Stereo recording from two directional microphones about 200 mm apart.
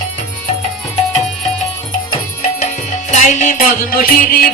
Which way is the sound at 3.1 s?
40° left (ahead or behind).